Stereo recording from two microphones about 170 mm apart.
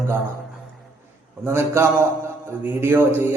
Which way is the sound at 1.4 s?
15° right (ahead or behind).